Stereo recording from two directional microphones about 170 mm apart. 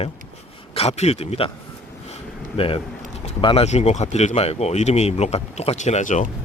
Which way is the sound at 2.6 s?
30° left (ahead or behind).